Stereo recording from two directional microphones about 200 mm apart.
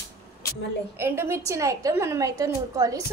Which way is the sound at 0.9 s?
10° right (ahead or behind).